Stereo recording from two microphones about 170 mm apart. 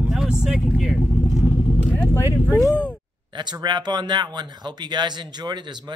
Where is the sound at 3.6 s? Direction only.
25° right (ahead or behind).